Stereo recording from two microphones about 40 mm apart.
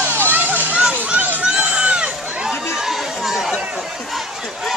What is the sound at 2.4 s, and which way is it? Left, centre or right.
Run, centre.